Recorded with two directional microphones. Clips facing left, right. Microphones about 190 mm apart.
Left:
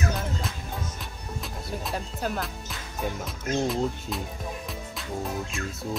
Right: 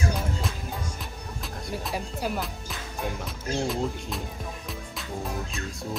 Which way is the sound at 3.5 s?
Centre (ahead or behind).